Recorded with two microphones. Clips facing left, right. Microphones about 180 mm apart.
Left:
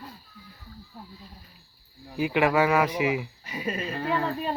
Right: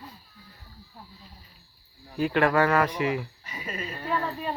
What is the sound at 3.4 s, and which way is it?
Speech, 35° left (ahead or behind).